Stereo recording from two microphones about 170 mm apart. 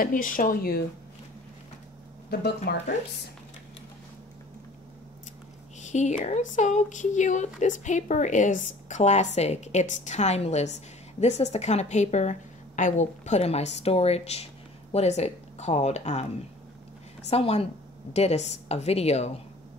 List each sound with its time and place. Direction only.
0.0 s a woman's voice: 55° left (ahead or behind)
2.3 s speech: 70° left (ahead or behind)
5.8 s a woman's voice: 45° left (ahead or behind)
17.3 s a woman's voice: 35° left (ahead or behind)